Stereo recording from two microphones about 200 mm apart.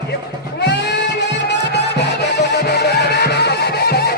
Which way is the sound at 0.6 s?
60° left (ahead or behind).